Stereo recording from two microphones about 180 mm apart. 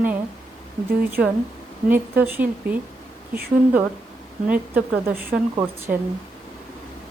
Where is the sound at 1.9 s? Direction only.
10° right (ahead or behind).